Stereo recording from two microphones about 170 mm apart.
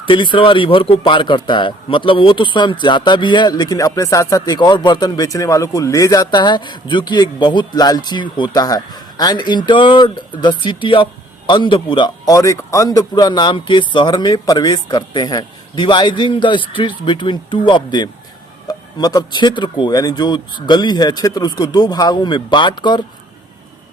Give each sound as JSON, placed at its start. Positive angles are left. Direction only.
{"t": 0.0, "sound": "a man's voice", "side_deg": 30}